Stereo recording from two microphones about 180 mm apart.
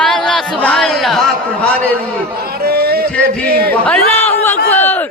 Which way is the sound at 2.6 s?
60° right (ahead or behind).